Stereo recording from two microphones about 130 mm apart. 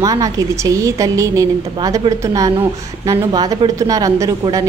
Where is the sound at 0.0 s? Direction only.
30° right (ahead or behind).